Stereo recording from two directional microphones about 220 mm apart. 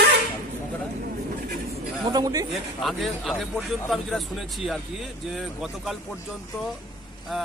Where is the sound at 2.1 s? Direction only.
20° right (ahead or behind).